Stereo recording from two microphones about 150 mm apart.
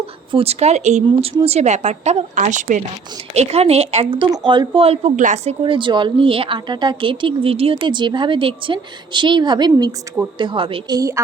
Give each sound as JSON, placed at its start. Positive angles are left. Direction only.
{"t": 0.0, "sound": "speech", "side_deg": -40}
{"t": 3.3, "sound": "speech", "side_deg": -45}
{"t": 5.6, "sound": "speech", "side_deg": -30}
{"t": 10.9, "sound": "a woman's voice", "side_deg": -20}